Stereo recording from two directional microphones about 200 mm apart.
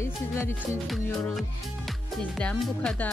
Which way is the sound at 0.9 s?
Centre (ahead or behind).